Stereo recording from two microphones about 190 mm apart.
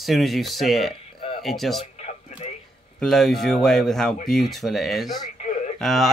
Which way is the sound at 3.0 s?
Centre (ahead or behind).